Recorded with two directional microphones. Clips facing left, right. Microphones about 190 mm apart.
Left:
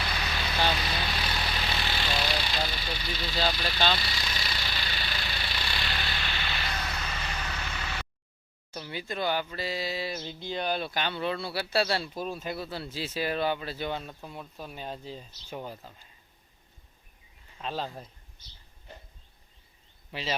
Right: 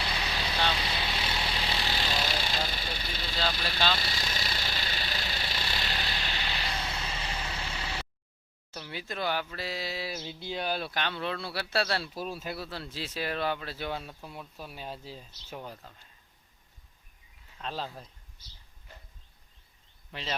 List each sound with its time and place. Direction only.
0.0 s vehicle: 25° right (ahead or behind); by 3.3 s 50° right (ahead or behind)
4.0 s engine: 45° right (ahead or behind)
8.7 s speech: centre (ahead or behind)
17.6 s speech: 5° left (ahead or behind)
20.1 s speech: 5° left (ahead or behind)